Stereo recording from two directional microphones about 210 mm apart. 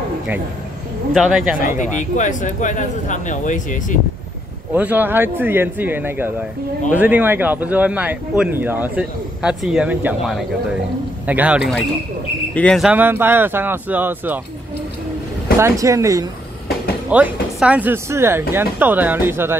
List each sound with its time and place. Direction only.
1.1 s speech: 5° right (ahead or behind)
1.6 s speech: 40° left (ahead or behind)
4.7 s speech: 10° right (ahead or behind)
15.6 s speech: 15° right (ahead or behind)